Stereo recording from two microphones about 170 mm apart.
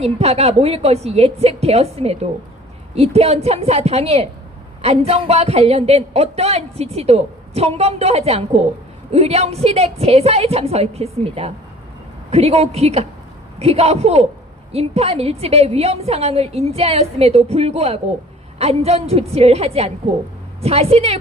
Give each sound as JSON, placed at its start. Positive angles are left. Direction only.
{"t": 0.0, "sound": "a woman's voice", "side_deg": -40}